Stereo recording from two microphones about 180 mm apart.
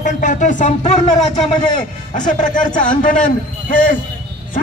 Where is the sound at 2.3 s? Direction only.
45° left (ahead or behind).